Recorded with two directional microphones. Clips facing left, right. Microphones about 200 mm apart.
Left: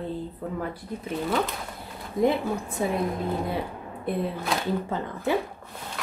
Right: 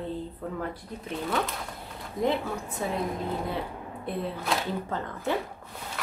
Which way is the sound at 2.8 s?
10° left (ahead or behind).